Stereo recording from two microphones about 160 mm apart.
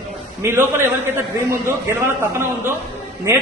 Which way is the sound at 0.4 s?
15° right (ahead or behind).